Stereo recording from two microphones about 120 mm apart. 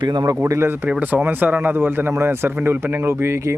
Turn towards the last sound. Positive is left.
turn(degrees=-25)  # may be behind; listen again after turning